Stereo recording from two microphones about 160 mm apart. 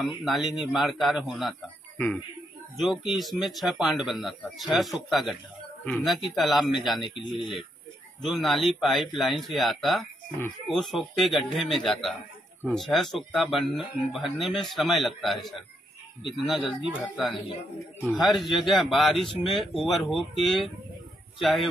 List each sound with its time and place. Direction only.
0.2 s speech: centre (ahead or behind)
7.0 s speech: 30° left (ahead or behind)
8.2 s speech: centre (ahead or behind)
18.0 s speech: centre (ahead or behind)